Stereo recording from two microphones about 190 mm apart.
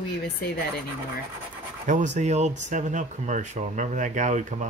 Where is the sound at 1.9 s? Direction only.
40° right (ahead or behind).